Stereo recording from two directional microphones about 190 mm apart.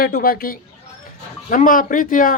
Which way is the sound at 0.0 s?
50° left (ahead or behind).